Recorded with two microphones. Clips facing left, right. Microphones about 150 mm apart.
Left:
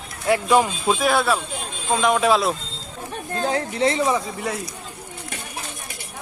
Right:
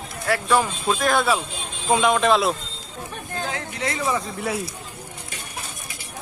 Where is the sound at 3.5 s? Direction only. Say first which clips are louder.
Left 9 dB; 30° left (ahead or behind).